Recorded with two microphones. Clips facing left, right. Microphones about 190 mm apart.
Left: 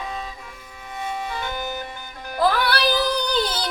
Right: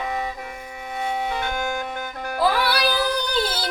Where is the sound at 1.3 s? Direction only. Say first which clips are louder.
Right 3 dB; 60° right (ahead or behind).